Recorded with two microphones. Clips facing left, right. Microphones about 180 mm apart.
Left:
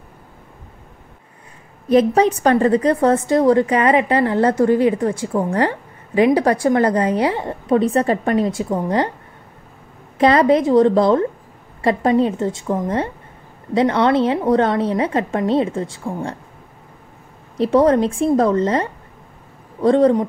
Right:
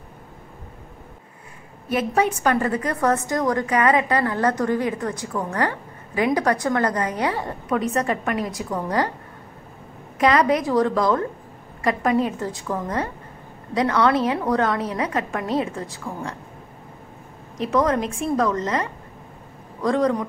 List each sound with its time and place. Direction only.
1.9 s a woman's voice: 35° left (ahead or behind)
10.1 s a woman's voice: 30° left (ahead or behind)
17.6 s a woman's voice: 30° left (ahead or behind)